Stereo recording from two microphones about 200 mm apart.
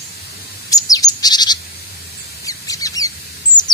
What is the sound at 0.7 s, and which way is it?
Bird, 15° left (ahead or behind).